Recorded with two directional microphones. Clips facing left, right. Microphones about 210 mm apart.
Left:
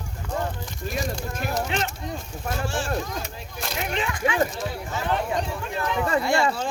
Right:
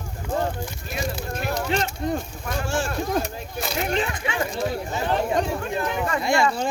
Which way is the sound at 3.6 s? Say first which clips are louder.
Right 4 dB; centre (ahead or behind).